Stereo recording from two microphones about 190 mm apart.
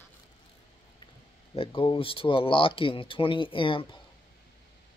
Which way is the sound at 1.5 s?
30° left (ahead or behind).